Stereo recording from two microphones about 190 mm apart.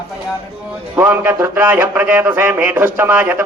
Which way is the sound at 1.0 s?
10° right (ahead or behind).